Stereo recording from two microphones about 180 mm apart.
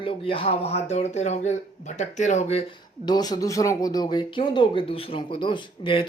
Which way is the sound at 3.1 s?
20° left (ahead or behind).